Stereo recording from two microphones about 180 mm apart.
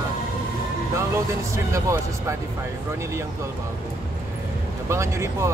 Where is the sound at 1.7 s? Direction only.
15° right (ahead or behind).